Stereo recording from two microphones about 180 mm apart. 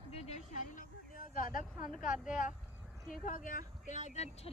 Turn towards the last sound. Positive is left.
turn(degrees=40)  # may be behind; listen again after turning